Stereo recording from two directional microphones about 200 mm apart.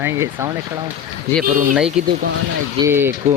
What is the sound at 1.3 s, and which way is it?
Speech, 15° left (ahead or behind).